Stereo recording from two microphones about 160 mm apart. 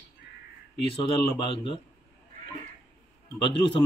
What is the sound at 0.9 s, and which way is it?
Speech, 30° left (ahead or behind).